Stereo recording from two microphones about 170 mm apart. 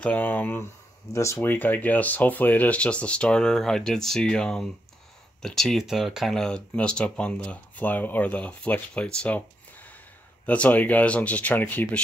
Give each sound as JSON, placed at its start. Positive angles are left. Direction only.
{"t": 0.0, "sound": "speech", "side_deg": 10}